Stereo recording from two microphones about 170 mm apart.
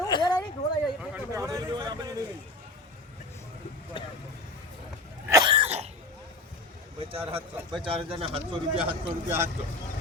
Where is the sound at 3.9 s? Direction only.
30° left (ahead or behind).